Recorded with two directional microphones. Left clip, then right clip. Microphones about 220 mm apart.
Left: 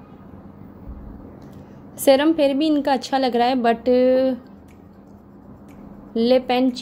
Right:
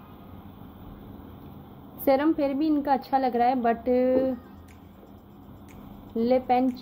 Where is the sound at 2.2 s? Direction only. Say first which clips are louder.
Left 7 dB; 35° left (ahead or behind).